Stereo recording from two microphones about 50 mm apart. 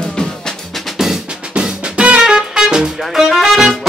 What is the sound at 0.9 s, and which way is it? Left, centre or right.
Drum, centre.